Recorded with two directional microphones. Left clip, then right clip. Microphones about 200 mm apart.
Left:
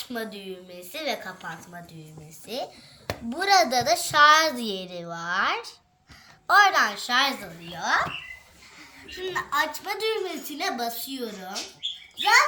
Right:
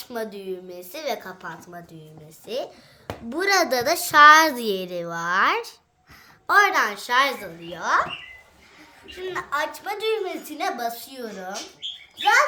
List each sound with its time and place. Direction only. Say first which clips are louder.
0.0 s a woman's voice: right 3 dB; 45° right (ahead or behind)
3.2 s a woman's voice: even; 50° right (ahead or behind)
9.0 s a woman's voice: even; 35° right (ahead or behind)